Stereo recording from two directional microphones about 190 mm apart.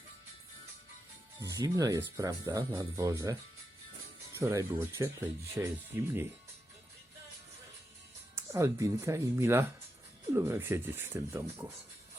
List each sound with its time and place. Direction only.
1.4 s speech: 15° right (ahead or behind)
4.4 s speech: 15° right (ahead or behind)
8.4 s speech: 15° right (ahead or behind)